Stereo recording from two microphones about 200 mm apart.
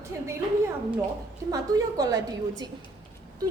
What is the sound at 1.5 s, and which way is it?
A woman's voice, 20° right (ahead or behind).